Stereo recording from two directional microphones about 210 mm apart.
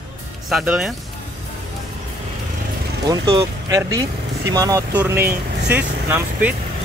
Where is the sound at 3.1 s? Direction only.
15° right (ahead or behind).